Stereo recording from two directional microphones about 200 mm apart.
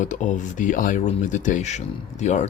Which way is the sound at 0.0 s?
40° left (ahead or behind).